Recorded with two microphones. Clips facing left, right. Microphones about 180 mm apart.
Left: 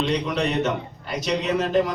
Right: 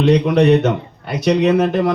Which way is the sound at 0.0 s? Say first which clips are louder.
Right 10 dB; 65° right (ahead or behind).